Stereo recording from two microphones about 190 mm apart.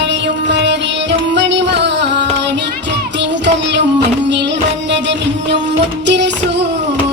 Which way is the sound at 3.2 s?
65° right (ahead or behind).